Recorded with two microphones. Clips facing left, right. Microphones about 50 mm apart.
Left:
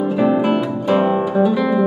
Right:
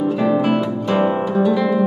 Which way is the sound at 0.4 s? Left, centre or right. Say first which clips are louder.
Left 1 dB; centre.